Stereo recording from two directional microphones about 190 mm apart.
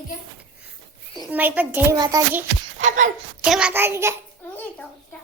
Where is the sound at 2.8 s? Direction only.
40° right (ahead or behind).